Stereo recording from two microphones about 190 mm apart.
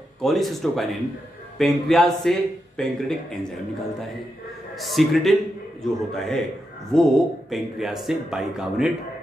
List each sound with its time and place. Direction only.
0.2 s speech: centre (ahead or behind)
4.7 s speech: centre (ahead or behind)